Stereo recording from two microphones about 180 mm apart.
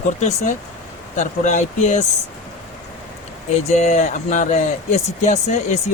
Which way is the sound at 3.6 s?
40° left (ahead or behind).